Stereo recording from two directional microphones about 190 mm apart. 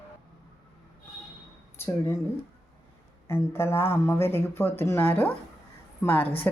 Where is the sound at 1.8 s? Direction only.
15° left (ahead or behind).